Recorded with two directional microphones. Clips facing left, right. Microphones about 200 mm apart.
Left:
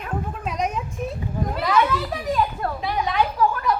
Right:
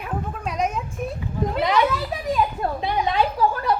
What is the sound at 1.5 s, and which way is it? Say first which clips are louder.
A child's voice: even; 20° right (ahead or behind).